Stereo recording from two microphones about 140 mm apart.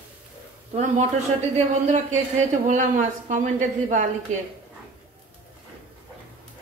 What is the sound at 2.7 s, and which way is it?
A woman's voice, 60° right (ahead or behind).